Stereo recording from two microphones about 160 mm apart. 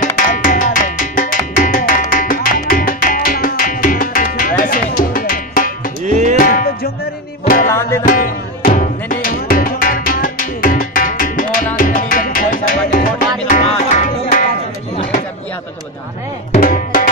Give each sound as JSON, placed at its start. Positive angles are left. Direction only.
{"t": 0.0, "sound": "music", "side_deg": 55}
{"t": 6.0, "sound": "music", "side_deg": -50}
{"t": 6.3, "sound": "music", "side_deg": 60}
{"t": 8.0, "sound": "music", "side_deg": 60}
{"t": 16.5, "sound": "music", "side_deg": 60}